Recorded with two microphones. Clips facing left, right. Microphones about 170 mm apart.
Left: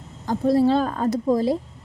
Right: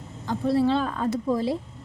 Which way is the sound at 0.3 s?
40° left (ahead or behind).